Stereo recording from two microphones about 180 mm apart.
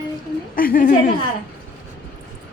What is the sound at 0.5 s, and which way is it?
Speech, 50° left (ahead or behind).